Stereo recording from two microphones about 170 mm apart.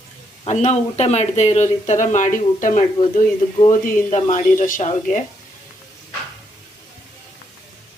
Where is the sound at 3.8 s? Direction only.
45° left (ahead or behind).